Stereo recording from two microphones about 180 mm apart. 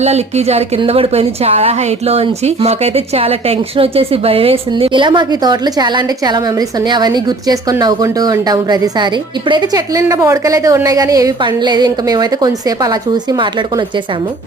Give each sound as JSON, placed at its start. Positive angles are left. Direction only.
{"t": 0.0, "sound": "a woman's voice", "side_deg": -35}